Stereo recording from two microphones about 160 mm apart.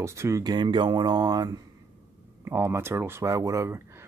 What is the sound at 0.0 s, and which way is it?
Speech, 20° right (ahead or behind).